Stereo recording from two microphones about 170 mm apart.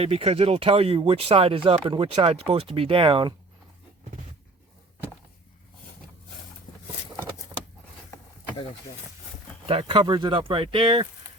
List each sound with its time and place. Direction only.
0.0 s speech: 35° right (ahead or behind)
9.6 s speech: 35° right (ahead or behind)